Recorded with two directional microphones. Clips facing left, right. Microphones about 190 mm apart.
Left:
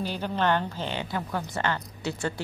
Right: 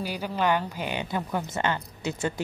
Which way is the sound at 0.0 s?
10° right (ahead or behind).